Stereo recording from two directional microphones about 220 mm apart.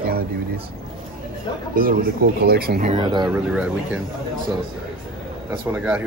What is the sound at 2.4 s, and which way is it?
Speech, 45° right (ahead or behind).